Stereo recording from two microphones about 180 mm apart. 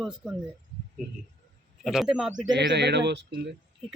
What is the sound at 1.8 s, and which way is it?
Speech, centre (ahead or behind).